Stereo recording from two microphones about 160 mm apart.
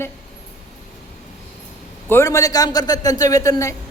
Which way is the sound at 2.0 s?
15° left (ahead or behind).